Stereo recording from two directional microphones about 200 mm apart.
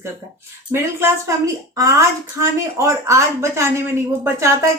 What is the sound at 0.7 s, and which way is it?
Speech, 15° right (ahead or behind).